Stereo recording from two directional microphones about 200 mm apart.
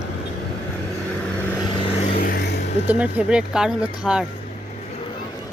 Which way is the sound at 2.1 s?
45° left (ahead or behind).